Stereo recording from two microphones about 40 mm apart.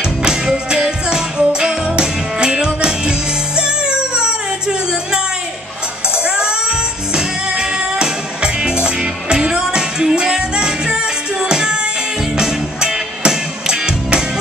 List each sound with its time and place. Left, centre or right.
0.0 s music: centre